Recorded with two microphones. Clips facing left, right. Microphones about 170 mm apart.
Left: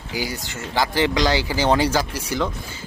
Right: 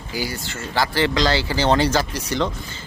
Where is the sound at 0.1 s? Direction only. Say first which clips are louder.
Even; 15° left (ahead or behind).